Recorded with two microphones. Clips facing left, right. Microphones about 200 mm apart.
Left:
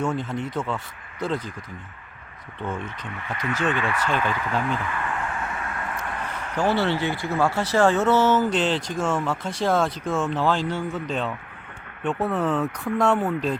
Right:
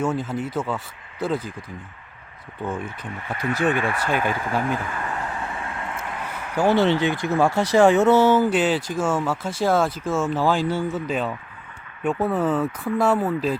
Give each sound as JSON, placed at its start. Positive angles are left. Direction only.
{"t": 0.0, "sound": "speech", "side_deg": -5}
{"t": 2.6, "sound": "speech", "side_deg": -10}
{"t": 3.8, "sound": "speech", "side_deg": -35}
{"t": 4.1, "sound": "speech", "side_deg": -10}
{"t": 4.8, "sound": "speech", "side_deg": -40}
{"t": 5.1, "sound": "vehicle", "side_deg": -35}
{"t": 6.0, "sound": "speech", "side_deg": -10}